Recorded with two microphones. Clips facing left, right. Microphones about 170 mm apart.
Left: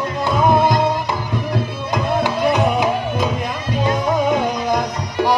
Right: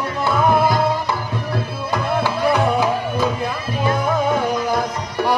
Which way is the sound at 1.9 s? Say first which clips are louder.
Left 1 dB; 15° left (ahead or behind).